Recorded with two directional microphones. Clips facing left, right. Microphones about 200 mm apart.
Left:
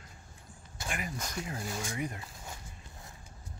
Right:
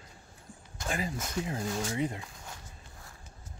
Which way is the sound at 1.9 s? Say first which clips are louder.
Right 5 dB; 25° right (ahead or behind).